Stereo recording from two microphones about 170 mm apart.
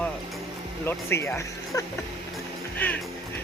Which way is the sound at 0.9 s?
15° left (ahead or behind).